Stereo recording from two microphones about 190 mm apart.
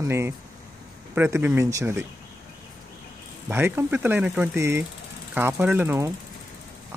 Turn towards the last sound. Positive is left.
turn(degrees=-10)  # may be behind; listen again after turning